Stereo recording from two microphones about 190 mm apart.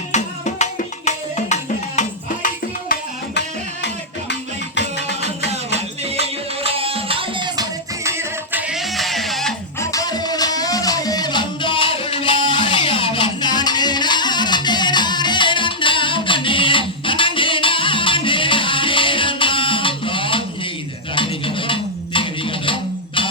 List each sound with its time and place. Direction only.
0.1 s music: 40° left (ahead or behind)
4.3 s music: 65° left (ahead or behind)
5.5 s music: 35° right (ahead or behind); by 8.6 s 15° right (ahead or behind)
8.7 s music: centre (ahead or behind)
9.8 s music: 20° left (ahead or behind)